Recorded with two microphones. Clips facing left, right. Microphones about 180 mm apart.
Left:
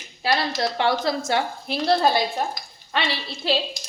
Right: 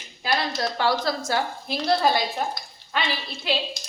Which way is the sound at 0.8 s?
25° left (ahead or behind).